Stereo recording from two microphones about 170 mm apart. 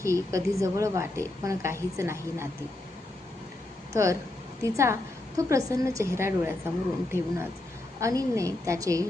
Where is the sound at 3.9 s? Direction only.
20° right (ahead or behind).